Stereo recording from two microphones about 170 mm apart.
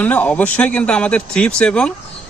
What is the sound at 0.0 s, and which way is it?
Speech, 10° left (ahead or behind).